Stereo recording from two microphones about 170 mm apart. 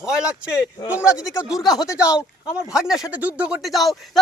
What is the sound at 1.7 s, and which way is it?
Speech, 20° left (ahead or behind).